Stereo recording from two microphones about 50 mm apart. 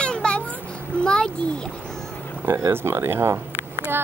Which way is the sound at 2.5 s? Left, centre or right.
Right.